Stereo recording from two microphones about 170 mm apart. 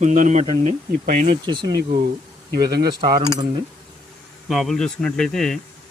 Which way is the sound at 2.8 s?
25° right (ahead or behind).